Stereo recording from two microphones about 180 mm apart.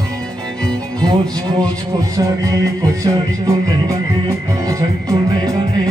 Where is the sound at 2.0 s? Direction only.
20° right (ahead or behind).